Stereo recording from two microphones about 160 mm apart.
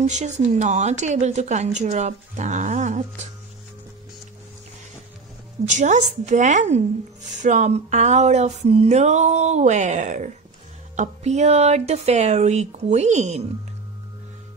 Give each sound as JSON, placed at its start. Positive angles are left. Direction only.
{"t": 0.0, "sound": "a woman's voice", "side_deg": -50}
{"t": 5.7, "sound": "a woman's voice", "side_deg": -50}